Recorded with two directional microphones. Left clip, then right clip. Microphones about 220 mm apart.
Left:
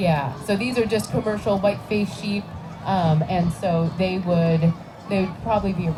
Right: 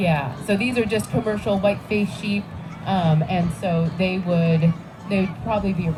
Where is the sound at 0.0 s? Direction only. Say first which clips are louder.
Even; 5° left (ahead or behind).